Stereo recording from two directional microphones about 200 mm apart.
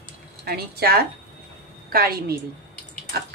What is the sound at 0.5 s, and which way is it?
A woman's voice, 50° right (ahead or behind).